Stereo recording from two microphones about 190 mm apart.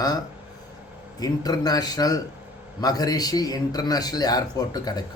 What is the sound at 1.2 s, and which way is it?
Speech, 20° left (ahead or behind).